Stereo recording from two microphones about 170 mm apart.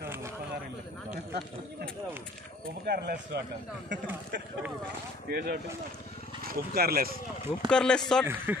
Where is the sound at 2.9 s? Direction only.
70° right (ahead or behind).